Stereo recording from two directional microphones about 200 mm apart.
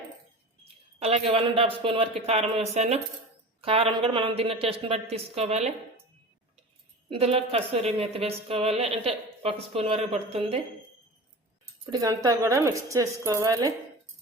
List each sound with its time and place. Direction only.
0.9 s a woman's voice: 30° right (ahead or behind)
7.1 s a woman's voice: 30° right (ahead or behind)
11.9 s speech: 20° right (ahead or behind)